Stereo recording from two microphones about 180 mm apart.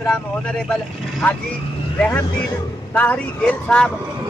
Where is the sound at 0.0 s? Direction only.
5° left (ahead or behind).